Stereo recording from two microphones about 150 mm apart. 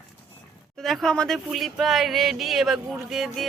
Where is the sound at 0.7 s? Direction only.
Centre (ahead or behind).